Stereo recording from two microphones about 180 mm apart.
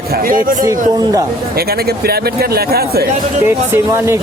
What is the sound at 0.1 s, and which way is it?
Speech, 50° right (ahead or behind).